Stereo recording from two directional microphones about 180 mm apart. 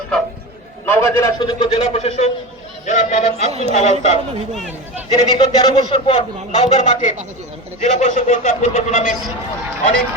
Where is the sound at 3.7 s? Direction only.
40° left (ahead or behind).